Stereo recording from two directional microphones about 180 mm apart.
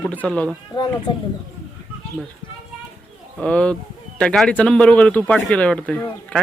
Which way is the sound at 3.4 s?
5° left (ahead or behind).